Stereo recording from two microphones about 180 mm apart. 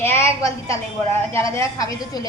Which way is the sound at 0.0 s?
15° left (ahead or behind).